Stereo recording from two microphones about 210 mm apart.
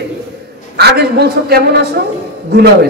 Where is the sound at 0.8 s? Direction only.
50° right (ahead or behind).